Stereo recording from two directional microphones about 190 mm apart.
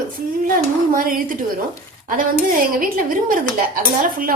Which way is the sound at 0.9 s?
45° right (ahead or behind).